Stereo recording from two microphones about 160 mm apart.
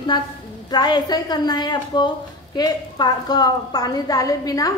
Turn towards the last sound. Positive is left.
turn(degrees=20)  # may be behind; listen again after turning